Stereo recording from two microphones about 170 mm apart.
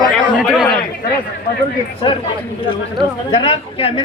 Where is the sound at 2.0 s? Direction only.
30° left (ahead or behind).